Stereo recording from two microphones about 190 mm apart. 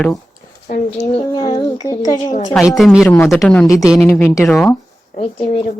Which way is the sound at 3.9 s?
5° left (ahead or behind).